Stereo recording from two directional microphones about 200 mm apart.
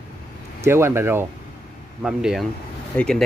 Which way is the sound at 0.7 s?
15° right (ahead or behind).